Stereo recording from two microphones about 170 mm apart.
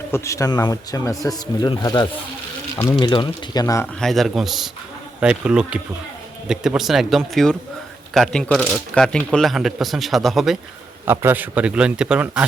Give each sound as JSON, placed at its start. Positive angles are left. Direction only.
{"t": 0.1, "sound": "speech", "side_deg": 20}
{"t": 4.0, "sound": "speech", "side_deg": 0}
{"t": 11.0, "sound": "a man's voice", "side_deg": -15}